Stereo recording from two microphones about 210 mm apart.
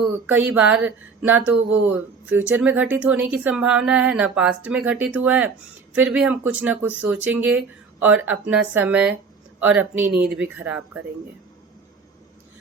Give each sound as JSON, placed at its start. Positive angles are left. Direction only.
{"t": 0.3, "sound": "speech", "side_deg": -5}